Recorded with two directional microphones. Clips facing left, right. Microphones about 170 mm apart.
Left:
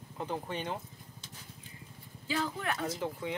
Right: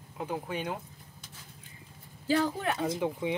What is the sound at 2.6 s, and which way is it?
Speech, 25° right (ahead or behind).